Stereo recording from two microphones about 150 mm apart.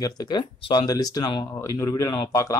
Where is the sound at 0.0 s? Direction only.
30° left (ahead or behind).